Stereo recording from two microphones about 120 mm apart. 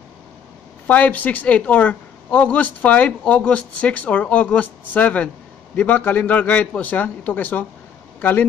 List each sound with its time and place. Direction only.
0.8 s speech: 15° left (ahead or behind)